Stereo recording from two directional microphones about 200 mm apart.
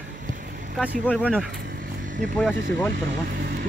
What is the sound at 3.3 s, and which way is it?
Speech, 50° right (ahead or behind).